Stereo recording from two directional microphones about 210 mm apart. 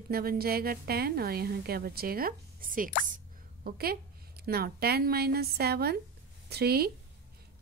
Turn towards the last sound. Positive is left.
turn(degrees=-50)  # may be behind; listen again after turning